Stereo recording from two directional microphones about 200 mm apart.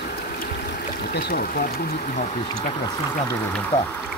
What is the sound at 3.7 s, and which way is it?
Speech, 35° left (ahead or behind).